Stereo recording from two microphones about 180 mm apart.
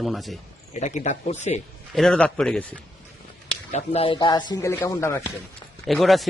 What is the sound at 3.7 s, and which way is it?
Speech, 35° left (ahead or behind).